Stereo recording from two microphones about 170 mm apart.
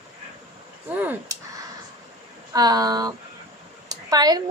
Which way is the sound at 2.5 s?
20° right (ahead or behind).